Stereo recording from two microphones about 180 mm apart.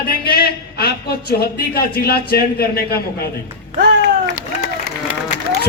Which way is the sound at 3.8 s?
60° right (ahead or behind).